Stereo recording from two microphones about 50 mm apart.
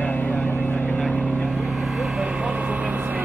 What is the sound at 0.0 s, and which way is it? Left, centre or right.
Vehicle, left.